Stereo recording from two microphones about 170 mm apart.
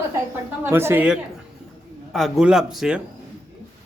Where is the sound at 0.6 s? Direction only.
15° right (ahead or behind).